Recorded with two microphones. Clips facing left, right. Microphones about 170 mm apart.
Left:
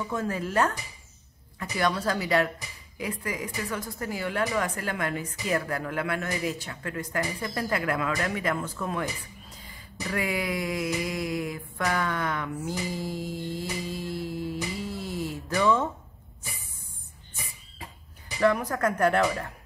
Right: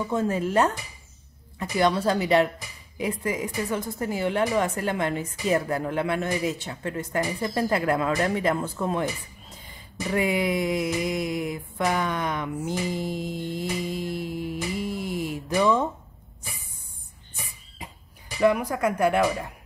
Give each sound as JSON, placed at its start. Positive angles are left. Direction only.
{"t": 0.1, "sound": "a woman's voice", "side_deg": -25}
{"t": 10.0, "sound": "a sound", "side_deg": -20}
{"t": 18.4, "sound": "speech", "side_deg": -10}